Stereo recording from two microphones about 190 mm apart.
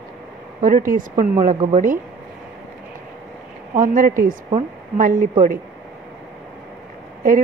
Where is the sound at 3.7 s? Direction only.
45° right (ahead or behind).